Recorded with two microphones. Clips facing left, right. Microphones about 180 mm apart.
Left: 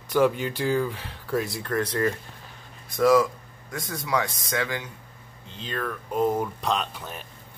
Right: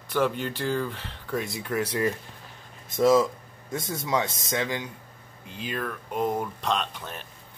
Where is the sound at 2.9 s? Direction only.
20° right (ahead or behind); by 7.2 s 5° left (ahead or behind).